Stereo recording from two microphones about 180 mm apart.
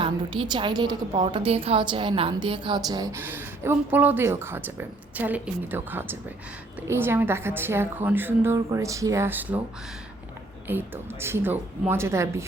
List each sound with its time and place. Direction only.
0.0 s a woman's voice: 25° right (ahead or behind); by 9.6 s 10° right (ahead or behind)
10.7 s a woman's voice: 10° right (ahead or behind)